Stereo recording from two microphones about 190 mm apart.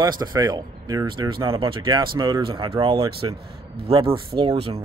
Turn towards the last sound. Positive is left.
turn(degrees=-30)  # may be behind; listen again after turning